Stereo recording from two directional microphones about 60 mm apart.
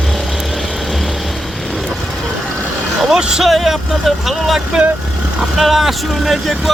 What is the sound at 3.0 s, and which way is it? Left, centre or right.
Speech, centre.